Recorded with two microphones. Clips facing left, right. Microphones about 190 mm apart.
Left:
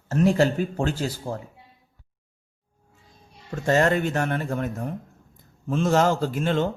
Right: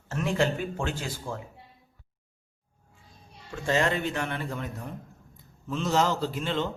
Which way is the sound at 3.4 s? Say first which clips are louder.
Left 5 dB; 45° left (ahead or behind).